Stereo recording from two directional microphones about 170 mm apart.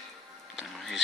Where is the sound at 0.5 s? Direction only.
Centre (ahead or behind).